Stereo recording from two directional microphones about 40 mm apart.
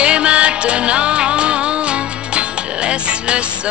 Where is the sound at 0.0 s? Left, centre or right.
Right.